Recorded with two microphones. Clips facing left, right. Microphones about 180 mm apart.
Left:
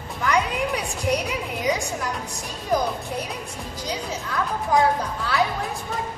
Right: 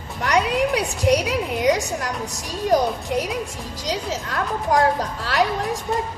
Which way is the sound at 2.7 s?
90° right.